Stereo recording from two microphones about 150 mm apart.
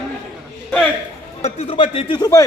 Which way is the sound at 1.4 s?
40° left (ahead or behind).